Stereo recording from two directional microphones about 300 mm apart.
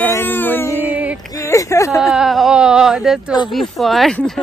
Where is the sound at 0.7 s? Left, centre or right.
Centre.